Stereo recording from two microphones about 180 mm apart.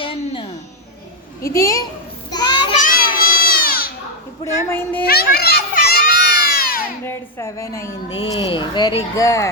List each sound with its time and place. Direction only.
0.0 s music: 30° left (ahead or behind)
1.5 s a woman's voice: 20° left (ahead or behind)
2.3 s child singing: 25° left (ahead or behind)
2.8 s a sound: 50° left (ahead or behind)
4.4 s a woman's voice: 10° left (ahead or behind)
5.0 s children playing: 60° left (ahead or behind)
7.0 s a woman's voice: 15° left (ahead or behind)
8.1 s speech: 30° left (ahead or behind)
9.1 s a woman's voice: 20° left (ahead or behind)